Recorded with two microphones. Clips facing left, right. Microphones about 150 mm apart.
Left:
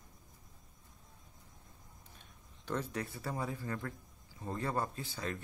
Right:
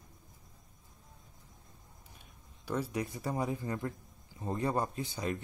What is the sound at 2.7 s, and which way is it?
A man's voice, 10° right (ahead or behind).